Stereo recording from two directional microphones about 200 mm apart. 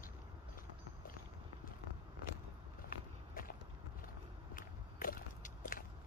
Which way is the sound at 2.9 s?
45° left (ahead or behind).